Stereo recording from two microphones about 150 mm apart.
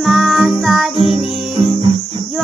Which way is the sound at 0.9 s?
40° right (ahead or behind).